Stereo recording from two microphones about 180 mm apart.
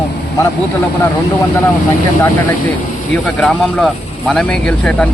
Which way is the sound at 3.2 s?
5° left (ahead or behind).